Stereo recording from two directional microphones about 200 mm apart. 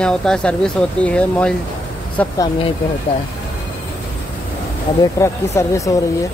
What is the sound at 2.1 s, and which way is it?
Speech, 20° left (ahead or behind).